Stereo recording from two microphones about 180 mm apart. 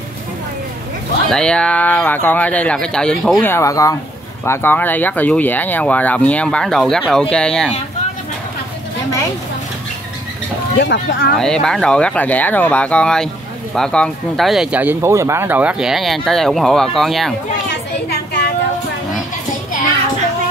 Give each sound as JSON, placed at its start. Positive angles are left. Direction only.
{"t": 1.3, "sound": "speech", "side_deg": 5}
{"t": 3.4, "sound": "speech", "side_deg": 15}
{"t": 10.8, "sound": "speech", "side_deg": 75}
{"t": 11.3, "sound": "speech", "side_deg": 5}
{"t": 18.0, "sound": "a sound", "side_deg": 60}